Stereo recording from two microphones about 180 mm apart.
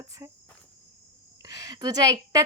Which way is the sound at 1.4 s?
20° right (ahead or behind).